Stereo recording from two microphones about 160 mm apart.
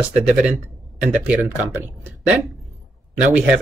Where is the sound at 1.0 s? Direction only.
5° right (ahead or behind).